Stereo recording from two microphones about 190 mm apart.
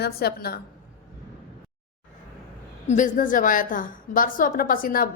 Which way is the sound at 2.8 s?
40° left (ahead or behind).